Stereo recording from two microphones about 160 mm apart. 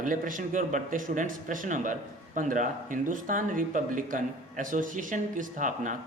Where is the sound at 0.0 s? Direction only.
55° right (ahead or behind).